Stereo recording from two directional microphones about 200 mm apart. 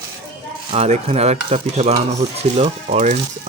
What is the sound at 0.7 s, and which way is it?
Stir, 30° right (ahead or behind).